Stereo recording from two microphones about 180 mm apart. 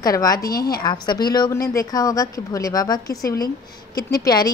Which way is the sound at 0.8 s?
25° left (ahead or behind).